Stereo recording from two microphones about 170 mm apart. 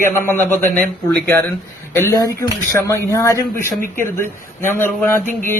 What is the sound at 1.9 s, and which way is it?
A man's voice, 15° left (ahead or behind).